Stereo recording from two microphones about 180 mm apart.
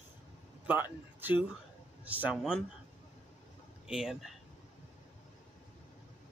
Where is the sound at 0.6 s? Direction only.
10° right (ahead or behind).